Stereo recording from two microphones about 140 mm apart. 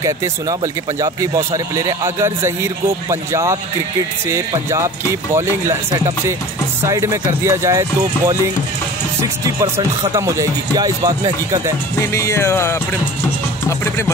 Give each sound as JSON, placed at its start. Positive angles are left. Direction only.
{"t": 0.0, "sound": "speech", "side_deg": -25}
{"t": 9.2, "sound": "speech", "side_deg": -25}
{"t": 12.0, "sound": "music", "side_deg": 20}